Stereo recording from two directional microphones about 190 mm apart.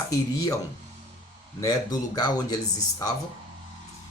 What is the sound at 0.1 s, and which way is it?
Speech, 20° left (ahead or behind).